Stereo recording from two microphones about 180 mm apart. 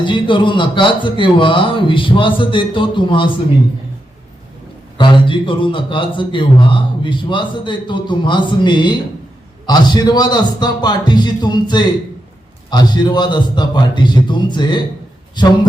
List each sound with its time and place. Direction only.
0.0 s a man's voice: 25° left (ahead or behind)
4.9 s a man's voice: 25° left (ahead or behind)